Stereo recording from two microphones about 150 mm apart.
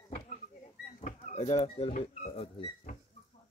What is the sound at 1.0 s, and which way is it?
Speech, 45° left (ahead or behind).